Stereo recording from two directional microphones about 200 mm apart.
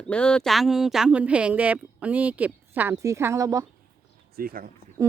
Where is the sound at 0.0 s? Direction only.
5° left (ahead or behind); by 3.7 s 15° right (ahead or behind).